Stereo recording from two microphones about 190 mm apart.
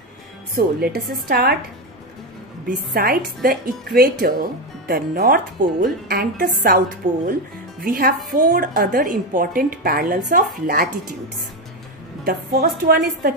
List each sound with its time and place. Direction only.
0.6 s a woman's voice: 55° right (ahead or behind)
2.7 s a woman's voice: 50° right (ahead or behind)
12.3 s a woman's voice: 55° right (ahead or behind)